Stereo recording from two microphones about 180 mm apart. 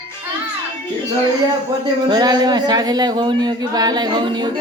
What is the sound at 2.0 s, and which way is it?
Speech, 25° right (ahead or behind).